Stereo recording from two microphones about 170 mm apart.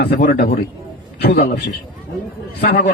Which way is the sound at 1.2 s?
70° left (ahead or behind).